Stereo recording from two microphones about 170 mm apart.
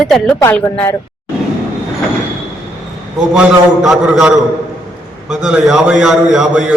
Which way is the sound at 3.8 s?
5° right (ahead or behind).